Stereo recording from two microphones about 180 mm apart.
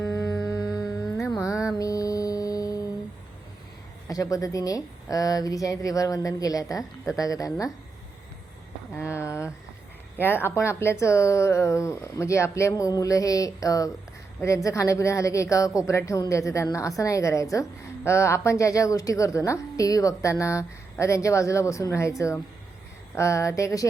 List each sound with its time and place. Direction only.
1.3 s music: 15° left (ahead or behind)
4.1 s speech: 20° left (ahead or behind)
9.0 s a sound: 15° left (ahead or behind)
10.2 s a woman's voice: 10° left (ahead or behind)
23.1 s a woman's voice: 15° left (ahead or behind)